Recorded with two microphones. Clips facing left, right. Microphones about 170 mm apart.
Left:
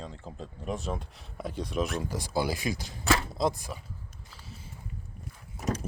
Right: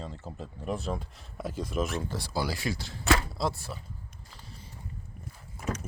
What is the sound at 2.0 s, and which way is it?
Speech, 15° left (ahead or behind).